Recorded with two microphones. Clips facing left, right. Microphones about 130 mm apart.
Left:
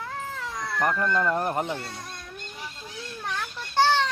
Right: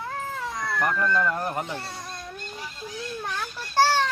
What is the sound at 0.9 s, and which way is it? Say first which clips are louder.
Speech: even; 25° left (ahead or behind).